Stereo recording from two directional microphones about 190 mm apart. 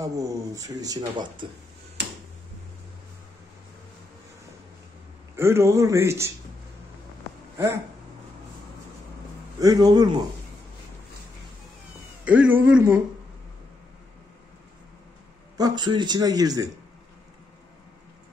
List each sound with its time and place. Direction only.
0.0 s speech: 15° right (ahead or behind)
5.3 s a man's voice: 15° right (ahead or behind)
7.5 s speech: 15° right (ahead or behind)
9.6 s speech: 20° right (ahead or behind)
12.3 s a man's voice: 10° right (ahead or behind)
15.5 s speech: 20° right (ahead or behind)